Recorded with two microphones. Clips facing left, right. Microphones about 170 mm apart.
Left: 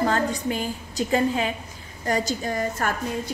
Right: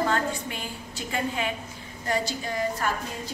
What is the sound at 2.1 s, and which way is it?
Speech, 45° left (ahead or behind).